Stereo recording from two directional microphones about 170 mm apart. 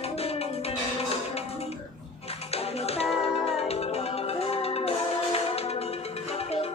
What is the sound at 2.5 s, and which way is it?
Tap, 35° left (ahead or behind).